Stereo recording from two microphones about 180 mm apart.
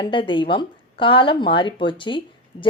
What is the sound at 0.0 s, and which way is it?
Speech, 25° left (ahead or behind).